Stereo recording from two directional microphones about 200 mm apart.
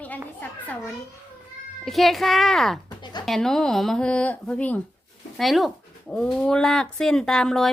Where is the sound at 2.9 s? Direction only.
20° left (ahead or behind).